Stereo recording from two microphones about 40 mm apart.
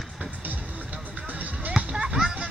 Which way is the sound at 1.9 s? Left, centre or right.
Right.